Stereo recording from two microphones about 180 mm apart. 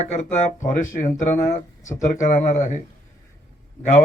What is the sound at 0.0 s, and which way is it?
Speech, 40° left (ahead or behind).